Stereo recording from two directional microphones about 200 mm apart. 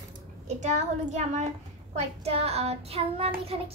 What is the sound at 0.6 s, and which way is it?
Speech, 35° right (ahead or behind).